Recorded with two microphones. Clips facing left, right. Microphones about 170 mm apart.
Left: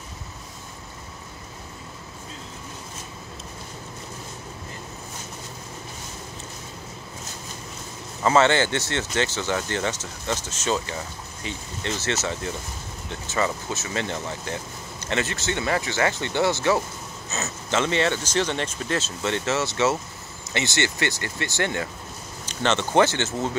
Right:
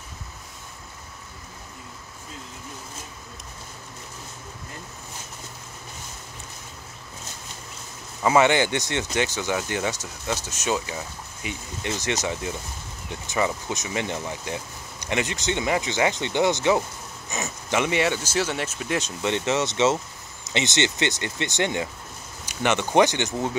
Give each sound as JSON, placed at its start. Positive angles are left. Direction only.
{"t": 8.2, "sound": "speech", "side_deg": -10}